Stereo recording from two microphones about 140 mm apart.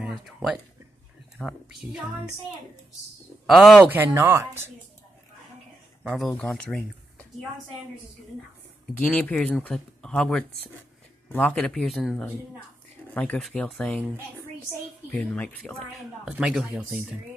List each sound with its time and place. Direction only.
0.0 s a woman's voice: 5° right (ahead or behind)
3.8 s speech: 15° right (ahead or behind)
6.1 s speech: 5° left (ahead or behind)
8.9 s a woman's voice: 10° left (ahead or behind)
15.0 s speech: 10° left (ahead or behind)
16.3 s a woman's voice: 5° right (ahead or behind)